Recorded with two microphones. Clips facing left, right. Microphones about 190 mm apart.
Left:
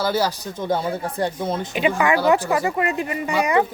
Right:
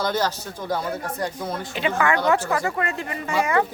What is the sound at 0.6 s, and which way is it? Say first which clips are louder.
Speech: left 4 dB; 25° left (ahead or behind).